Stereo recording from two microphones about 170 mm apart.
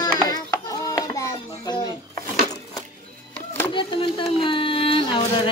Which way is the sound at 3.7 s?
30° left (ahead or behind).